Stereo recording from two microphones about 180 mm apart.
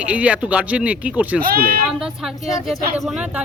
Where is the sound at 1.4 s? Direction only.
55° right (ahead or behind).